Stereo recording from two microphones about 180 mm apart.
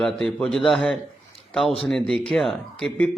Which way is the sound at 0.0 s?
5° left (ahead or behind).